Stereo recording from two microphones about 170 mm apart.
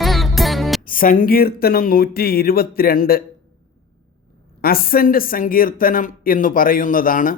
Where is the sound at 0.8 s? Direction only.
55° left (ahead or behind).